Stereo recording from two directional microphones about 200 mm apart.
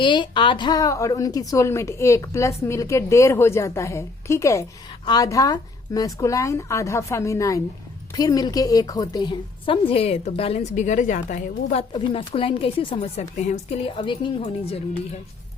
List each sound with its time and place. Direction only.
0.0 s a woman's voice: 25° left (ahead or behind)